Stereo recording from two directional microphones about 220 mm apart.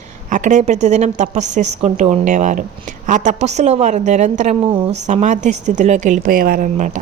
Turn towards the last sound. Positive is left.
turn(degrees=-35)  # may be behind; listen again after turning